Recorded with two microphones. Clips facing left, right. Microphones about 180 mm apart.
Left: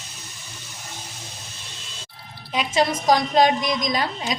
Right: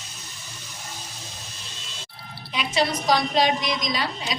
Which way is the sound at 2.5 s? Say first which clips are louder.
Left 3 dB; 45° left (ahead or behind).